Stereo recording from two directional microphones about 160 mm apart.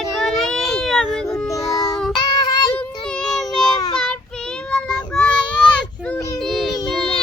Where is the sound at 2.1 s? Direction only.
25° left (ahead or behind).